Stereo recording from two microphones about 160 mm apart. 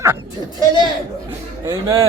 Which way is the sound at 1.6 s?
25° right (ahead or behind).